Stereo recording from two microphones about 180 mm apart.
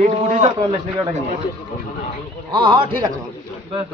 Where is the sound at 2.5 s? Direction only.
25° right (ahead or behind).